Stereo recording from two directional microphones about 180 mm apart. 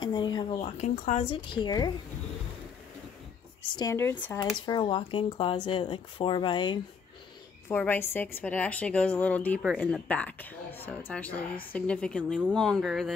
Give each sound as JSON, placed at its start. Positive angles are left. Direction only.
{"t": 0.0, "sound": "speech", "side_deg": 25}
{"t": 3.7, "sound": "a woman's voice", "side_deg": 15}
{"t": 4.4, "sound": "speech", "side_deg": 25}
{"t": 7.6, "sound": "a woman's voice", "side_deg": 10}